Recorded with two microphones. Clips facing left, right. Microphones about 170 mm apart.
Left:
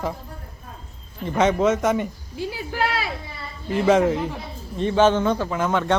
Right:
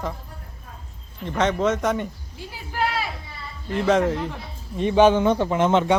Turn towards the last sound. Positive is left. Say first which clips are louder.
# right 3 dB
turn(degrees=-25)  # may be behind; listen again after turning